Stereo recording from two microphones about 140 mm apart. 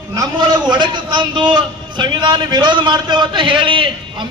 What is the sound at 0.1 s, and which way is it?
A man's voice, 30° right (ahead or behind).